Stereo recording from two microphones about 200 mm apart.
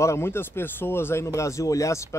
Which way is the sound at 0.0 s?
15° left (ahead or behind).